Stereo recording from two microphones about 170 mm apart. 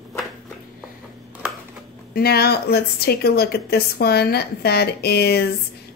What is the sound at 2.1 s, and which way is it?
A woman's voice, 65° left (ahead or behind).